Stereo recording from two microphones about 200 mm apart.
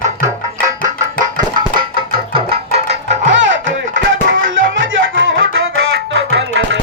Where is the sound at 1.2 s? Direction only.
25° right (ahead or behind).